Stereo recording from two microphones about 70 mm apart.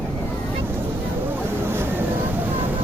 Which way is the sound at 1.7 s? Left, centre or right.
Right.